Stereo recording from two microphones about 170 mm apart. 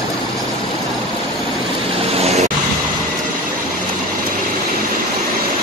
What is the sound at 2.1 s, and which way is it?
Vehicle, 40° right (ahead or behind).